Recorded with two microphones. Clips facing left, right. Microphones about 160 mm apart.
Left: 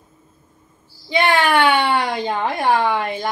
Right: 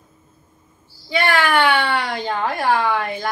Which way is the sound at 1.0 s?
20° left (ahead or behind).